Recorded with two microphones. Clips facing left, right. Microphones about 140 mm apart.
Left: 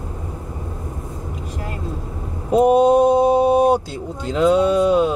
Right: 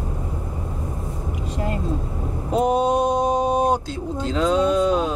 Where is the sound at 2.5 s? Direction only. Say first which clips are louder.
Left 6 dB; 15° left (ahead or behind).